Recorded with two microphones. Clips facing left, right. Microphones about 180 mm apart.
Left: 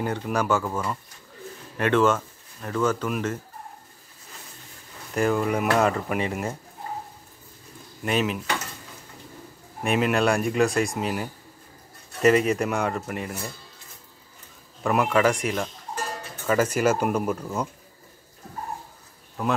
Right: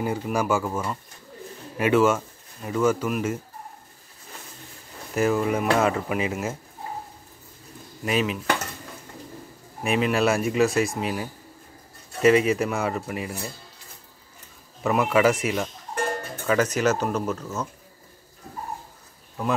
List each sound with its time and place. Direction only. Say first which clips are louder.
0.0 s speech: right 1 dB; 5° right (ahead or behind)
5.1 s speech: right 1 dB; 5° right (ahead or behind)
8.0 s speech: even; centre (ahead or behind)
9.8 s speech: even; centre (ahead or behind)
14.8 s speech: right 1 dB; centre (ahead or behind)
15.9 s cowbell: right 5 dB; 60° right (ahead or behind)
16.4 s speech: even; 10° left (ahead or behind)